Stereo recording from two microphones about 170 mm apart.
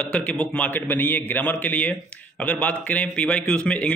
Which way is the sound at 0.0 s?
5° left (ahead or behind).